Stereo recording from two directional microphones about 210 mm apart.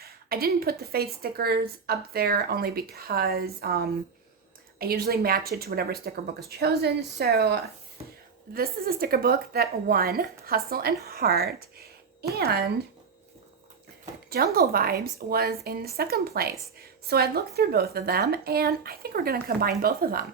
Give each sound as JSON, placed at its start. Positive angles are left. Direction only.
{"t": 0.0, "sound": "a woman's voice", "side_deg": -45}
{"t": 8.0, "sound": "a sound", "side_deg": -30}
{"t": 8.5, "sound": "a woman's voice", "side_deg": -45}
{"t": 14.3, "sound": "a woman's voice", "side_deg": -45}